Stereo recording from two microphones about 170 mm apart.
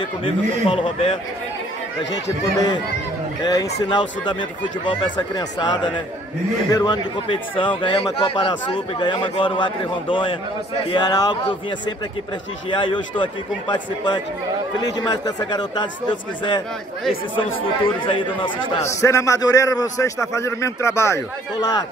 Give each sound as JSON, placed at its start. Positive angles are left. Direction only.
{"t": 0.2, "sound": "a man's voice", "side_deg": 30}
{"t": 3.9, "sound": "a man's voice", "side_deg": 25}
{"t": 12.7, "sound": "a man's voice", "side_deg": 30}
{"t": 18.9, "sound": "a man's voice", "side_deg": 15}